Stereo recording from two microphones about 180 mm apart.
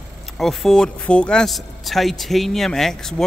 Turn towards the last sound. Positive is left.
turn(degrees=0)  # may be behind; listen again after turning